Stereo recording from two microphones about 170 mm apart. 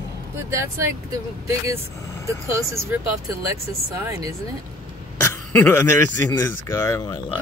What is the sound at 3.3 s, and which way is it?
Speech, 20° right (ahead or behind).